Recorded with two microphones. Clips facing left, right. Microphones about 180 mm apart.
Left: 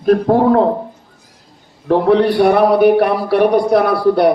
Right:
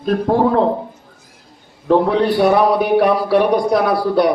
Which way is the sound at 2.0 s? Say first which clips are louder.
Left 3 dB; 60° left (ahead or behind).